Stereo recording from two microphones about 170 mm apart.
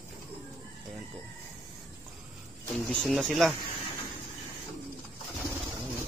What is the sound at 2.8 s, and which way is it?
Speech, centre (ahead or behind).